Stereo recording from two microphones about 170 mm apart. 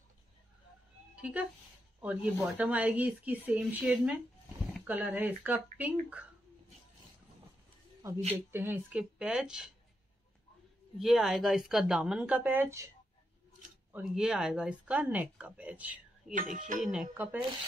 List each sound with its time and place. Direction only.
1.1 s music: 5° right (ahead or behind)
2.0 s speech: 5° right (ahead or behind)
8.5 s speech: 15° right (ahead or behind)
11.0 s speech: centre (ahead or behind)
13.9 s speech: 5° right (ahead or behind)
16.3 s a sound: 50° right (ahead or behind)
16.8 s speech: 5° right (ahead or behind)